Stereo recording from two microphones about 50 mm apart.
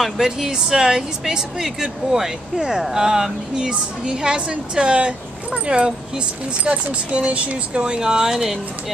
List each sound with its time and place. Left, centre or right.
0.0 s speech: centre